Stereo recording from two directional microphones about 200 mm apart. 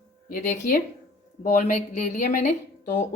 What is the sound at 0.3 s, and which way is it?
Speech, 40° left (ahead or behind).